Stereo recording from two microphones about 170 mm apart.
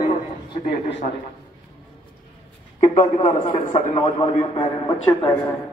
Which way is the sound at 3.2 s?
30° left (ahead or behind).